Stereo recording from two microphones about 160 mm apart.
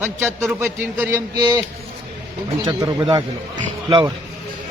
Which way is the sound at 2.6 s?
25° right (ahead or behind).